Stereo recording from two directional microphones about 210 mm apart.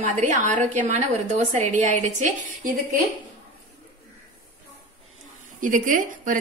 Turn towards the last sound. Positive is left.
turn(degrees=-40)  # may be behind; listen again after turning